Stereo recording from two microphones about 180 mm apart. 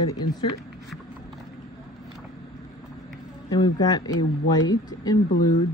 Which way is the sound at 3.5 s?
20° left (ahead or behind).